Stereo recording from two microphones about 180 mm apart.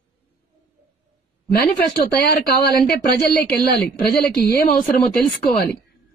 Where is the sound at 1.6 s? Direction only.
60° left (ahead or behind).